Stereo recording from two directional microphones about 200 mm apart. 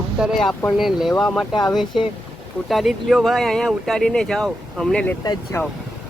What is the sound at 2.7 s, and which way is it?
Speech, centre (ahead or behind).